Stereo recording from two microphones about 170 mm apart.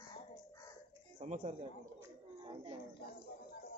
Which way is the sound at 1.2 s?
40° right (ahead or behind).